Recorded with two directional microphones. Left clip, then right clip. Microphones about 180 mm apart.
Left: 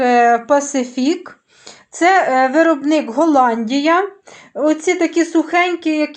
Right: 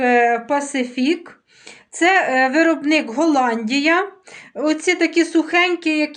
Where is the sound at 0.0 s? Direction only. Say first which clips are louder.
Left 3 dB; 40° left (ahead or behind).